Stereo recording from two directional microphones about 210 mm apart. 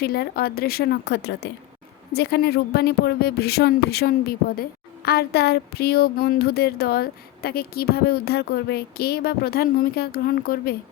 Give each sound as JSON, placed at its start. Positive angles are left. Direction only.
{"t": 0.0, "sound": "speech", "side_deg": 45}